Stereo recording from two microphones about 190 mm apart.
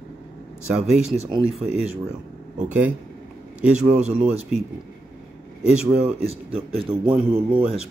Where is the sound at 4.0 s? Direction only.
35° right (ahead or behind).